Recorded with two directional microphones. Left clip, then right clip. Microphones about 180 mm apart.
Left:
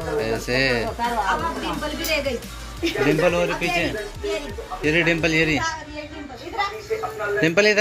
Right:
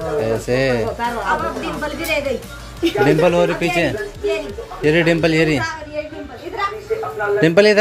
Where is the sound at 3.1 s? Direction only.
25° right (ahead or behind).